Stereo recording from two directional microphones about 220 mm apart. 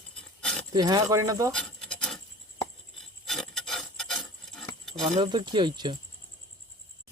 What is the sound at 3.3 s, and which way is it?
Filing, centre (ahead or behind).